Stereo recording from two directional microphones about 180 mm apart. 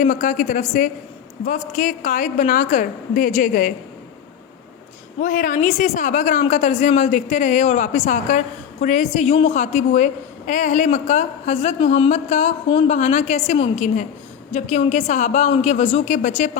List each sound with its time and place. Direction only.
0.0 s speech: 45° left (ahead or behind)
5.2 s a woman's voice: 45° left (ahead or behind)